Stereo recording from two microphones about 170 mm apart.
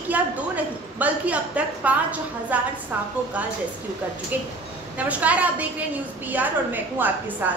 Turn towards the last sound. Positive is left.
turn(degrees=-10)  # may be behind; listen again after turning